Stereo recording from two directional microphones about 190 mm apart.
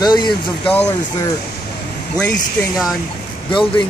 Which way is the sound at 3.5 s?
25° left (ahead or behind).